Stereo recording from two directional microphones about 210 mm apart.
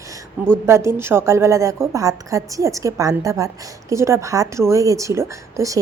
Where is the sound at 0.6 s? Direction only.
10° right (ahead or behind).